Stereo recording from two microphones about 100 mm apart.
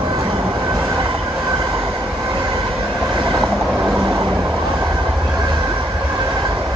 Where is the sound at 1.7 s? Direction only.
35° right (ahead or behind).